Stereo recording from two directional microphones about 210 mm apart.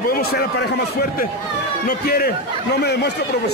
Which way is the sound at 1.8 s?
45° left (ahead or behind).